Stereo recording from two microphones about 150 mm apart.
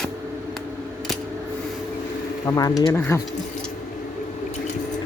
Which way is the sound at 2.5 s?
25° left (ahead or behind).